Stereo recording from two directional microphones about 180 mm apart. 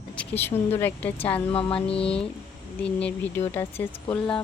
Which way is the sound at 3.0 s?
10° left (ahead or behind).